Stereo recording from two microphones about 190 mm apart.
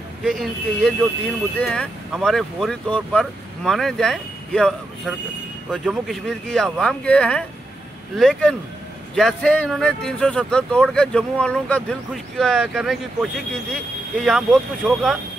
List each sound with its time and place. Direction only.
0.2 s speech: centre (ahead or behind)